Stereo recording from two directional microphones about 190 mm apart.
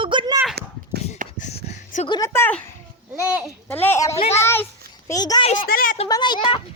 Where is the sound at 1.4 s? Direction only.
40° left (ahead or behind).